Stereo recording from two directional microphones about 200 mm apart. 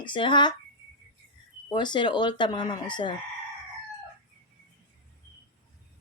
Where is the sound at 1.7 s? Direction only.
20° left (ahead or behind).